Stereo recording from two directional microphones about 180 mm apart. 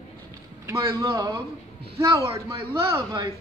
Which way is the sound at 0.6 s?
15° right (ahead or behind).